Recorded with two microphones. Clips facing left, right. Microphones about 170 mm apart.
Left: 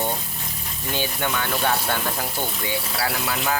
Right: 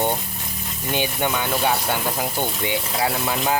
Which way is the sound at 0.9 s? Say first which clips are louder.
Right 3 dB; 15° right (ahead or behind).